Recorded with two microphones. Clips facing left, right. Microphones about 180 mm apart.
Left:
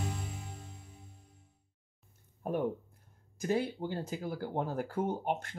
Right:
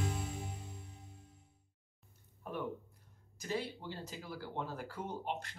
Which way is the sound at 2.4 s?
50° left (ahead or behind).